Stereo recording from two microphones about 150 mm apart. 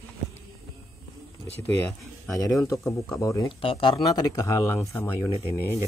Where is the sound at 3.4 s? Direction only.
35° left (ahead or behind).